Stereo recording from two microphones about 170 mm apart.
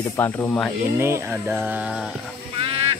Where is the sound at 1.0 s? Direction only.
15° right (ahead or behind).